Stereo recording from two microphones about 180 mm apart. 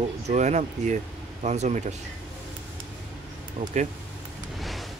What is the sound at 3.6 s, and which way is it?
Speech, 45° right (ahead or behind).